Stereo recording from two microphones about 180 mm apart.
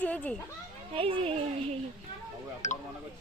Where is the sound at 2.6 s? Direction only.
40° left (ahead or behind).